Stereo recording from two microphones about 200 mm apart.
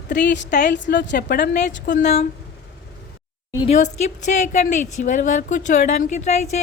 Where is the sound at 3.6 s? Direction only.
35° left (ahead or behind).